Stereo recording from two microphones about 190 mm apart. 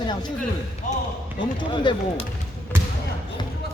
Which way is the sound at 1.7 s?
25° left (ahead or behind).